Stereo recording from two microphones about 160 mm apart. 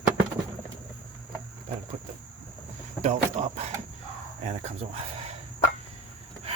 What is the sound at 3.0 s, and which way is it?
Speech, 45° right (ahead or behind).